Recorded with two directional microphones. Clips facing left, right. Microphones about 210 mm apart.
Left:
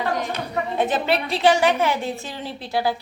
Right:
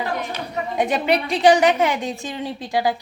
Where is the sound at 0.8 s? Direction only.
15° right (ahead or behind).